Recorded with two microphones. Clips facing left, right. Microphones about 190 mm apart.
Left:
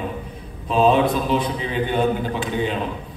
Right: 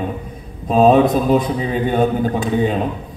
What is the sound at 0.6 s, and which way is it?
A man's voice, 45° right (ahead or behind).